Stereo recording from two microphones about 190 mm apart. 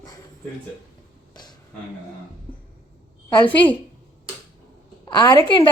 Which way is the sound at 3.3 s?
25° left (ahead or behind).